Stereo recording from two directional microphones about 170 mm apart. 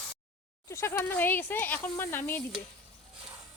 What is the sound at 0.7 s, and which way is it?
Speech, 15° left (ahead or behind).